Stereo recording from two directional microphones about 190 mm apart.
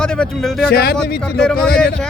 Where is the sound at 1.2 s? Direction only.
5° left (ahead or behind).